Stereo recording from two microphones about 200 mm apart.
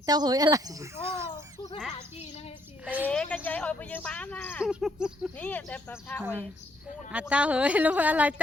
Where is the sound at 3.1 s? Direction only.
5° left (ahead or behind).